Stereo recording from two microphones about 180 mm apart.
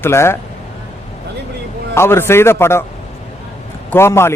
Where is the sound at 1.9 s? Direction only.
15° left (ahead or behind).